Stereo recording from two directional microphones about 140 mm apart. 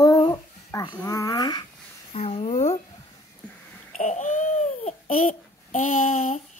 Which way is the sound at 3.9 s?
55° left (ahead or behind).